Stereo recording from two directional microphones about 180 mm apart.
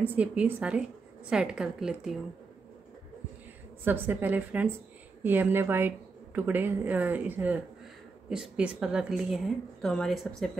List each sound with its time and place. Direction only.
0.0 s a woman's voice: 10° right (ahead or behind)
3.8 s a woman's voice: 10° right (ahead or behind)